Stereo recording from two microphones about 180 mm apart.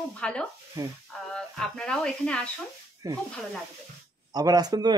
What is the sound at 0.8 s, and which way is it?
Speech, 15° right (ahead or behind).